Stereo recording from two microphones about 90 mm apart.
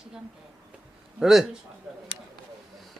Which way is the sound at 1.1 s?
5° right (ahead or behind).